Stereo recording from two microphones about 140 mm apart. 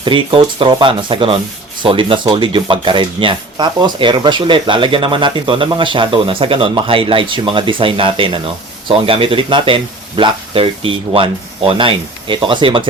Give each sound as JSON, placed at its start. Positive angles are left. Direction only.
{"t": 0.0, "sound": "speech", "side_deg": -35}